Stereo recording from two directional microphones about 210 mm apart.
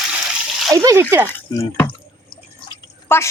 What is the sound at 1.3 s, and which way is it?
Speech, 10° left (ahead or behind).